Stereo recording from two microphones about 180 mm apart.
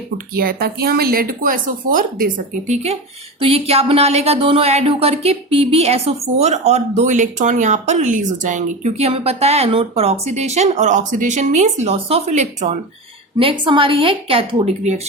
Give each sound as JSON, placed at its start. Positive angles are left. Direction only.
{"t": 0.3, "sound": "speech", "side_deg": -60}
{"t": 13.4, "sound": "speech", "side_deg": -30}